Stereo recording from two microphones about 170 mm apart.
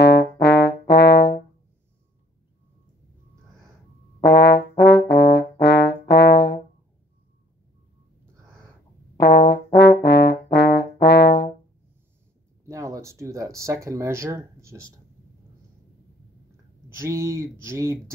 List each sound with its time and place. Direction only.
0.0 s brass instrument: 80° left
4.2 s trombone: 85° left
5.1 s brass instrument: 85° left
9.2 s brass instrument: 80° left
12.6 s a sound: 20° right (ahead or behind)
13.8 s speech: 15° right (ahead or behind)
17.0 s speech: 20° right (ahead or behind)